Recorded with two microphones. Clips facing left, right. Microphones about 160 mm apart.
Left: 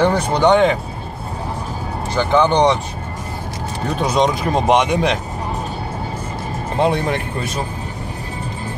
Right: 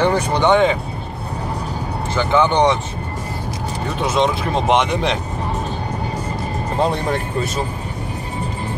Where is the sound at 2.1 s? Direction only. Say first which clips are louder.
Left 1 dB; 15° left (ahead or behind).